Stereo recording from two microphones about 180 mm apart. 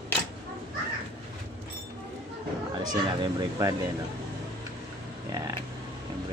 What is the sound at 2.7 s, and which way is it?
Speech, 25° right (ahead or behind).